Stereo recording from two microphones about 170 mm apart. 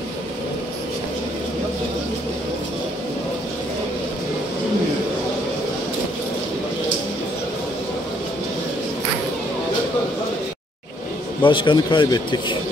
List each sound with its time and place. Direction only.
11.4 s a man's voice: 30° left (ahead or behind)